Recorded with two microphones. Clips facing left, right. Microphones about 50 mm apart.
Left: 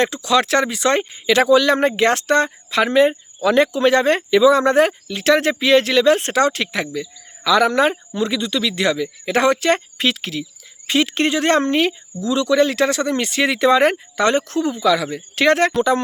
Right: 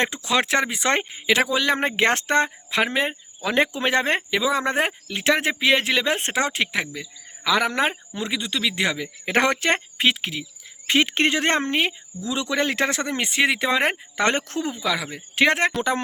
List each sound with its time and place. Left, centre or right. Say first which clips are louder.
0.3 s speech: left 5 dB; right
1.3 s speech: left 7 dB; centre; by 9.8 s right
10.0 s speech: left 1 dB; centre
10.8 s speech: left 2 dB; right
11.6 s speech: left 5 dB; centre
12.5 s speech: left 5 dB; right; by 13.9 s centre
14.2 s speech: left 5 dB; right
14.6 s speech: left 8 dB; right